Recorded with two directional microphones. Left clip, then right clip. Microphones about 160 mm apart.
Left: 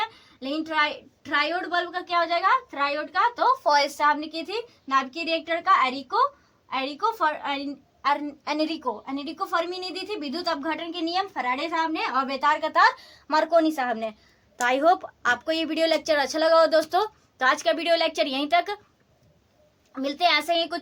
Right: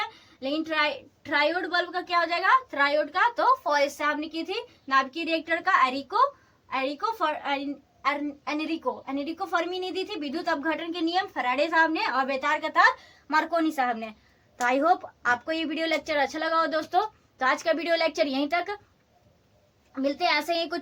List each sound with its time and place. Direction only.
1.3 s a woman's voice: 30° left (ahead or behind); by 3.5 s 15° left (ahead or behind)
3.6 s speech: 45° left (ahead or behind)
4.9 s a woman's voice: 30° left (ahead or behind)
6.7 s a woman's voice: 35° left (ahead or behind)
8.0 s a woman's voice: 50° left (ahead or behind)
14.6 s a woman's voice: 15° left (ahead or behind); by 17.1 s 35° left (ahead or behind)
17.3 s a woman's voice: 15° left (ahead or behind)
19.9 s a woman's voice: 20° left (ahead or behind)